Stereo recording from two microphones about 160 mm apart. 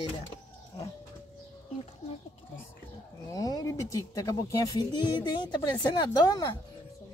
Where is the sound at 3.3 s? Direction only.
20° left (ahead or behind).